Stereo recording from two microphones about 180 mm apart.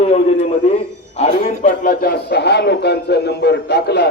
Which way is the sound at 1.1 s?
35° left (ahead or behind).